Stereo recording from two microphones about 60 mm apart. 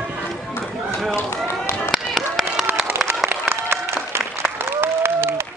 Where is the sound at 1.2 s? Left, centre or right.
Left.